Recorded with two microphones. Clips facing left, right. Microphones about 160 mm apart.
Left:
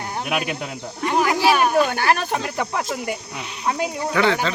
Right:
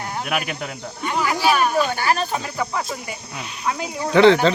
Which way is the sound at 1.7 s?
55° left (ahead or behind).